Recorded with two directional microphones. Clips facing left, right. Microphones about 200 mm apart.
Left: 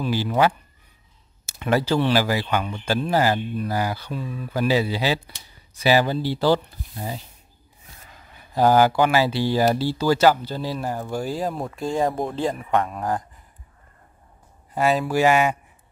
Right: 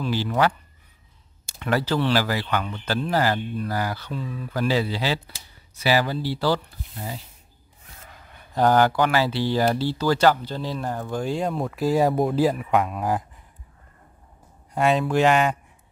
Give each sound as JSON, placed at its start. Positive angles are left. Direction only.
{"t": 0.0, "sound": "speech", "side_deg": 15}
{"t": 1.4, "sound": "a sound", "side_deg": 5}
{"t": 1.7, "sound": "speech", "side_deg": 15}
{"t": 8.5, "sound": "speech", "side_deg": 5}
{"t": 14.7, "sound": "speech", "side_deg": 0}